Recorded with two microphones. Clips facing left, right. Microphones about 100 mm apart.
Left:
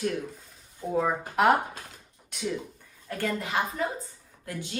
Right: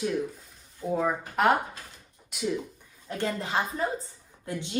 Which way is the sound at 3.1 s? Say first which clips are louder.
Even; 25° right (ahead or behind).